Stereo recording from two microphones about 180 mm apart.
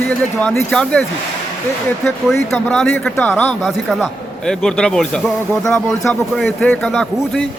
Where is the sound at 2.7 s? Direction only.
5° left (ahead or behind).